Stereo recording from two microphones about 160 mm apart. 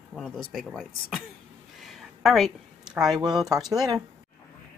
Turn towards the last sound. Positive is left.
turn(degrees=-25)  # may be behind; listen again after turning